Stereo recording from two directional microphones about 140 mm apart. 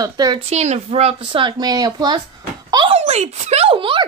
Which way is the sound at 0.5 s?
50° right (ahead or behind).